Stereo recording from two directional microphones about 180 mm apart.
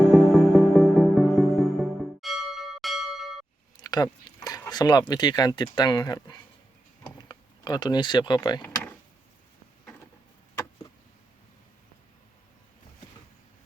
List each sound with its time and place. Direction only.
0.1 s music: centre (ahead or behind)
3.8 s a sound: 20° left (ahead or behind)
5.7 s speech: 25° left (ahead or behind)
8.6 s power windows: 10° left (ahead or behind)